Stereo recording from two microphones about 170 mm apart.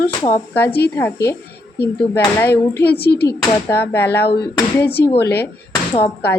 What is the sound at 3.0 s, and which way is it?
Speech, 70° left (ahead or behind).